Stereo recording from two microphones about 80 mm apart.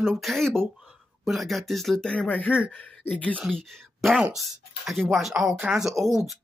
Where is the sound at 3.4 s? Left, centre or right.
Centre.